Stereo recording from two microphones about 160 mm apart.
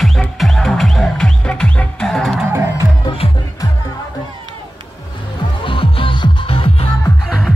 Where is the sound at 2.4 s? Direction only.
15° right (ahead or behind).